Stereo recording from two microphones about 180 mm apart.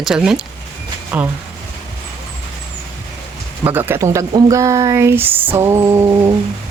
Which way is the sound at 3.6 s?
10° right (ahead or behind).